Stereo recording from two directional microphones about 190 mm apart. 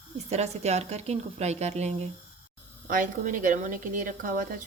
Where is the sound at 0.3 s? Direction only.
35° right (ahead or behind).